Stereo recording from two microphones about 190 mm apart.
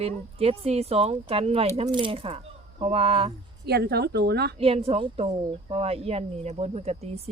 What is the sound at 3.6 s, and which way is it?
Speech, 60° right (ahead or behind).